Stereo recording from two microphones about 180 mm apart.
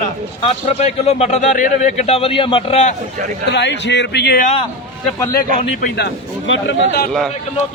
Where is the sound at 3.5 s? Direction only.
75° left (ahead or behind).